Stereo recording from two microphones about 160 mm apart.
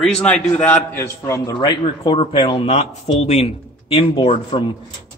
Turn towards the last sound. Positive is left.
turn(degrees=35)  # may be behind; listen again after turning